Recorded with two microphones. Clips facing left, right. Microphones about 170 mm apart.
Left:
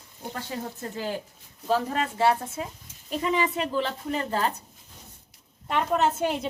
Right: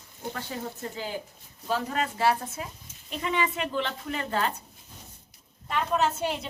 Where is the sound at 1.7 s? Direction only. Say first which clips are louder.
Left 3 dB; 30° left (ahead or behind).